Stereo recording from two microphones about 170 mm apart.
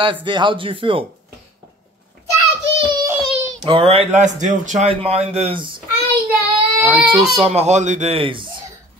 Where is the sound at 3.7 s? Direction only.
30° right (ahead or behind).